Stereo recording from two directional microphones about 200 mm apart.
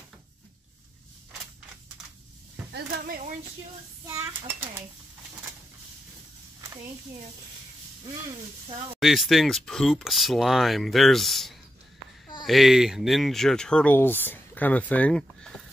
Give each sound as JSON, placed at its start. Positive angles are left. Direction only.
{"t": 2.7, "sound": "a sound", "side_deg": -45}
{"t": 4.0, "sound": "a child's voice", "side_deg": -15}
{"t": 9.0, "sound": "speech", "side_deg": 0}